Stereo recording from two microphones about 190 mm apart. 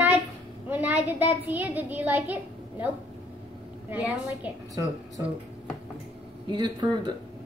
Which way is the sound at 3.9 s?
10° right (ahead or behind).